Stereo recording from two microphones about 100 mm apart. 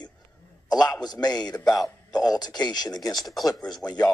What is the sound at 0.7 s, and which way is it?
A man's voice, 40° left (ahead or behind).